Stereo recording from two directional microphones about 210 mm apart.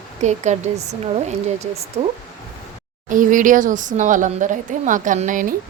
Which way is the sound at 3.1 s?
40° right (ahead or behind).